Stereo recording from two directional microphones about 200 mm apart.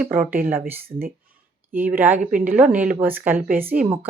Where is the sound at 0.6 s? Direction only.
45° right (ahead or behind).